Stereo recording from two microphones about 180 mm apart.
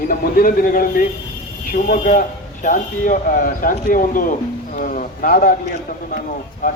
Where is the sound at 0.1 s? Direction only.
50° left (ahead or behind).